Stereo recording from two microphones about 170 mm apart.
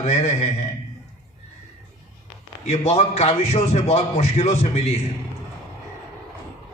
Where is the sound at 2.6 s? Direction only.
40° left (ahead or behind).